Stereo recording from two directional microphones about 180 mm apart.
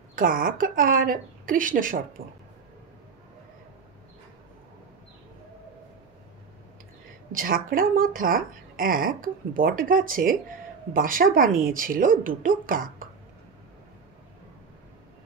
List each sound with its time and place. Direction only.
0.1 s a woman's voice: 50° right (ahead or behind)
7.3 s a woman's voice: 50° right (ahead or behind)